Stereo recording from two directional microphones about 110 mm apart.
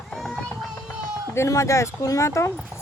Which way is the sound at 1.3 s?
25° left (ahead or behind).